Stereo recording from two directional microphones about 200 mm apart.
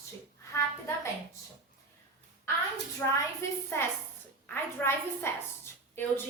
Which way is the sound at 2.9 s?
15° left (ahead or behind).